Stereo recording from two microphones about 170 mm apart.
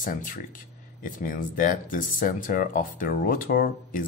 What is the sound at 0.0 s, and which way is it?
Speech, 50° left (ahead or behind).